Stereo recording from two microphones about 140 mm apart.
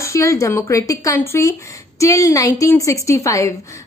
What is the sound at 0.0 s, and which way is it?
A woman's voice, 20° left (ahead or behind).